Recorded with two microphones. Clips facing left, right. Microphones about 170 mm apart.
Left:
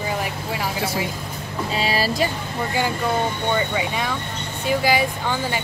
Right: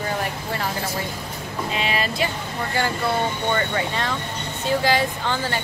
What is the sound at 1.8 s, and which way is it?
Speech, 35° left (ahead or behind).